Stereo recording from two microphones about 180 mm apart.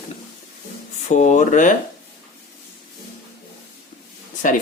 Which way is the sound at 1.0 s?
45° left (ahead or behind).